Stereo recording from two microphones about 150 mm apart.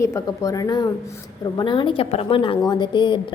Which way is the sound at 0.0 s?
20° left (ahead or behind).